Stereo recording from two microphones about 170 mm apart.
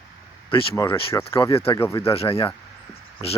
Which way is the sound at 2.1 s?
35° left (ahead or behind).